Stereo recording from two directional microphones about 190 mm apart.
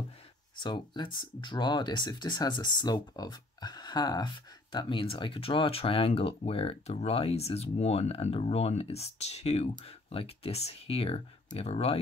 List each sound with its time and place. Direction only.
0.6 s speech: 25° left (ahead or behind)